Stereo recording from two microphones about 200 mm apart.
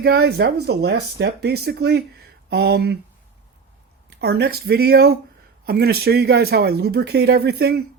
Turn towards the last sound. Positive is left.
turn(degrees=-55)  # may be behind; listen again after turning